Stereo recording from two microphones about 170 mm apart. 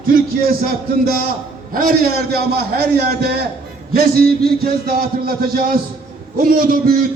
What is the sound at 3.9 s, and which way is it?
A man's voice, 65° right (ahead or behind).